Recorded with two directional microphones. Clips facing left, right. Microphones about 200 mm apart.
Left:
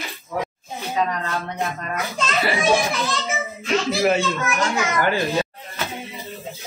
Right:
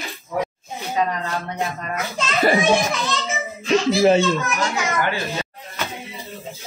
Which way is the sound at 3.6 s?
30° right (ahead or behind).